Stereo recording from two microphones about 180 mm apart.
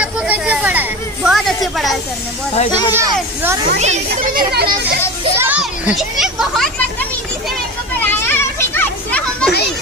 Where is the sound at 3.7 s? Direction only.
40° right (ahead or behind).